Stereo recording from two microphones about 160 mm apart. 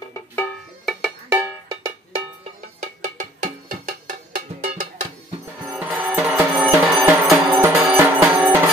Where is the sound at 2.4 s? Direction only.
45° right (ahead or behind).